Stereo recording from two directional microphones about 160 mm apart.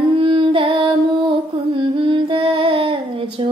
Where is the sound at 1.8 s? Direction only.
30° right (ahead or behind).